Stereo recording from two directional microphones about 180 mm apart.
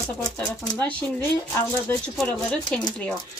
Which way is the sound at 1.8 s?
5° left (ahead or behind).